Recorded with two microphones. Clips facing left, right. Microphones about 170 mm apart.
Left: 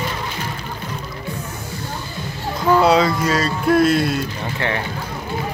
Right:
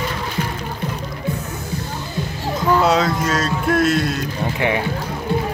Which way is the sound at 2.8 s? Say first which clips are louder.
Left 2 dB; centre (ahead or behind).